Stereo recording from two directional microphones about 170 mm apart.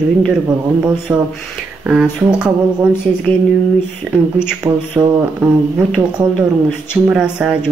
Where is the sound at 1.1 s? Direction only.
20° right (ahead or behind).